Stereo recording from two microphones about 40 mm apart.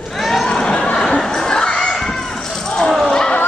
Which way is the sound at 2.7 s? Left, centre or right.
Centre.